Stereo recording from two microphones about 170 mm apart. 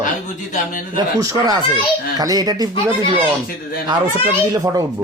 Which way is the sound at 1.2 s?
20° right (ahead or behind).